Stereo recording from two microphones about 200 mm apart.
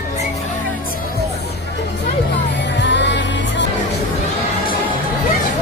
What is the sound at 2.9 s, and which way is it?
Music, 60° left (ahead or behind).